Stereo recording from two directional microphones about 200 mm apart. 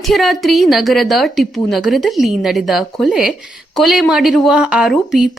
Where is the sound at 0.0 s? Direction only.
Centre (ahead or behind).